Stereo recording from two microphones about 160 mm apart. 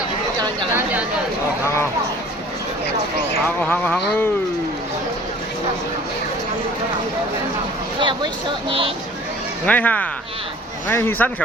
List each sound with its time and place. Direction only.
3.6 s speech: 10° left (ahead or behind)
7.9 s speech: 30° right (ahead or behind)
9.6 s speech: 10° left (ahead or behind)